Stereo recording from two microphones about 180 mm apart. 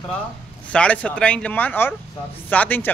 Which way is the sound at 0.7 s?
5° left (ahead or behind).